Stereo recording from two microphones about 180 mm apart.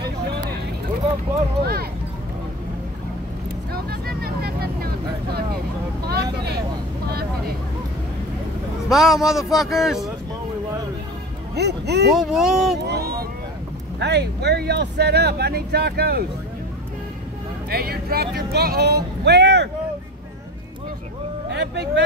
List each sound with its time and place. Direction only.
0.0 s vehicle: 65° right (ahead or behind)
1.6 s speech: 60° right (ahead or behind)
3.7 s vehicle: 60° right (ahead or behind)
6.0 s vehicle: 60° right (ahead or behind)
8.8 s speech: centre (ahead or behind)
11.5 s music: 70° right (ahead or behind)
12.1 s speech: centre (ahead or behind)
12.8 s a sound: 60° right (ahead or behind)
13.9 s speech: 70° right (ahead or behind)
17.6 s speech: 60° right (ahead or behind)
21.5 s speech: 70° right (ahead or behind)